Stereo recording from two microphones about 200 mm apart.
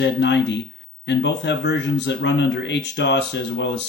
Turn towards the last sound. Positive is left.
turn(degrees=60)  # may be behind; listen again after turning